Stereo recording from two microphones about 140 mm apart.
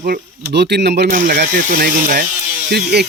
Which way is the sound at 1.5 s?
90° right.